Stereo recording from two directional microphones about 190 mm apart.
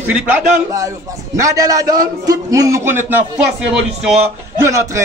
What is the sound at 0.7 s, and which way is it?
A man's voice, 15° right (ahead or behind).